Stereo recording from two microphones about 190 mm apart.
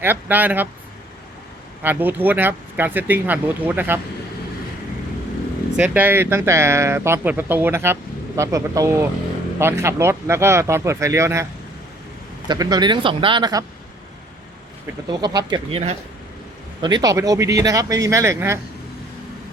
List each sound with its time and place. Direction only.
0.0 s speech: 10° right (ahead or behind)
1.8 s speech: 10° right (ahead or behind)
5.7 s speech: 10° right (ahead or behind)
12.5 s speech: 20° right (ahead or behind)
15.2 s speech: 20° right (ahead or behind)
16.8 s speech: 20° right (ahead or behind)